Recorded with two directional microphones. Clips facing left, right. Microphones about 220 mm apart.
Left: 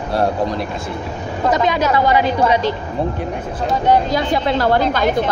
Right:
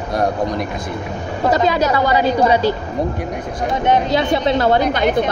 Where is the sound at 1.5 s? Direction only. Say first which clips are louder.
Right 1 dB; 35° right (ahead or behind).